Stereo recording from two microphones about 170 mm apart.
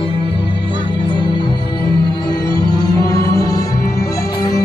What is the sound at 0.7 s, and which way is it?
Music, 30° left (ahead or behind).